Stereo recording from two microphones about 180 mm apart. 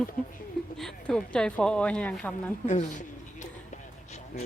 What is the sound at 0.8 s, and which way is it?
Speech, 5° left (ahead or behind).